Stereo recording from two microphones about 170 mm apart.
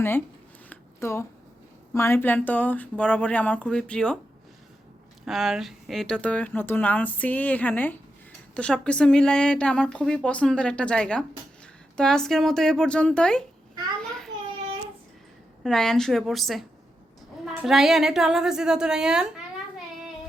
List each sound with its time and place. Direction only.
0.7 s a sound: 15° left (ahead or behind)
1.9 s speech: 15° left (ahead or behind)
5.2 s a woman's voice: centre (ahead or behind)
15.6 s a woman's voice: 5° left (ahead or behind)